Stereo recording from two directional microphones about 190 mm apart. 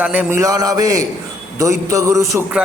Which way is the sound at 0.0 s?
10° right (ahead or behind).